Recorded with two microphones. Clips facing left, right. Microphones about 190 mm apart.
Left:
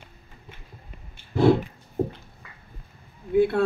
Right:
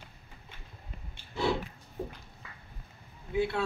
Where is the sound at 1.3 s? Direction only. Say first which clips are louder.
Left 11 dB; 55° left (ahead or behind).